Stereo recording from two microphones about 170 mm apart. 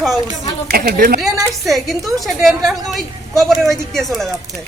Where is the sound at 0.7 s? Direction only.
60° right (ahead or behind).